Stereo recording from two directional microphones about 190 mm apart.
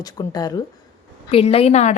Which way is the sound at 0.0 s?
20° left (ahead or behind).